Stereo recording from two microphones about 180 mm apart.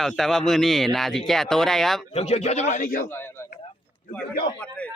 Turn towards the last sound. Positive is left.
turn(degrees=5)  # may be behind; listen again after turning